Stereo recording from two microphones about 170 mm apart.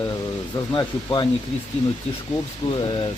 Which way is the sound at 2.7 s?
30° left (ahead or behind).